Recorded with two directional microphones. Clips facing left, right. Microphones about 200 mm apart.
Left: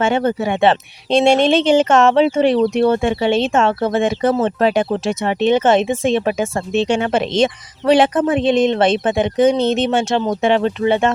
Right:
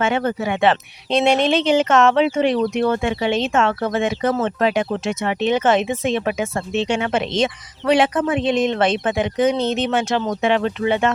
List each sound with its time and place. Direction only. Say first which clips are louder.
0.0 s speech: left 3 dB; 25° left (ahead or behind)